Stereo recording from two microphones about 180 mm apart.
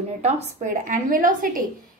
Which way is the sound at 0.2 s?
45° right (ahead or behind).